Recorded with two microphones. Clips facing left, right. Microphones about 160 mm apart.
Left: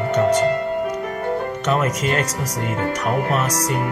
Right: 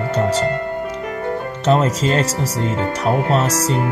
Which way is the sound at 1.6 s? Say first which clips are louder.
Right 5 dB; 30° right (ahead or behind).